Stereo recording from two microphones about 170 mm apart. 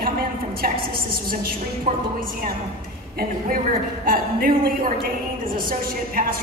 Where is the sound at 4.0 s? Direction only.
55° right (ahead or behind).